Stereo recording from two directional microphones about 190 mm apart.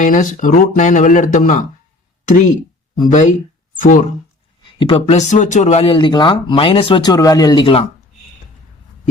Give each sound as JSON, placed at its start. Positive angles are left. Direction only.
{"t": 0.0, "sound": "speech", "side_deg": 45}
{"t": 3.1, "sound": "speech", "side_deg": 40}
{"t": 4.8, "sound": "speech", "side_deg": 25}